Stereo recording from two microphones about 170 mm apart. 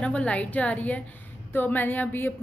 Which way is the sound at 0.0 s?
5° left (ahead or behind).